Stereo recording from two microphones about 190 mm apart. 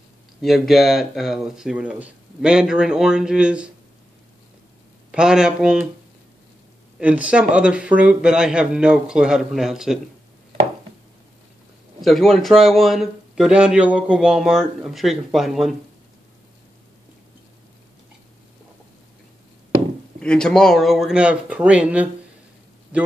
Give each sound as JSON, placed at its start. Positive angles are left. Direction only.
{"t": 0.4, "sound": "a man's voice", "side_deg": 0}
{"t": 5.1, "sound": "a man's voice", "side_deg": -5}
{"t": 7.0, "sound": "a man's voice", "side_deg": -5}
{"t": 12.0, "sound": "a man's voice", "side_deg": 0}
{"t": 20.2, "sound": "a man's voice", "side_deg": 5}